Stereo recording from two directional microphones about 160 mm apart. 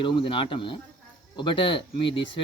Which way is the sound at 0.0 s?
30° left (ahead or behind).